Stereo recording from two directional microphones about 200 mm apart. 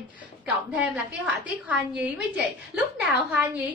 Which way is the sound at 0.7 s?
5° right (ahead or behind).